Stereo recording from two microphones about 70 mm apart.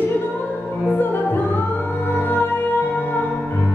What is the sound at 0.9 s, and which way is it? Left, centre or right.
Music, left.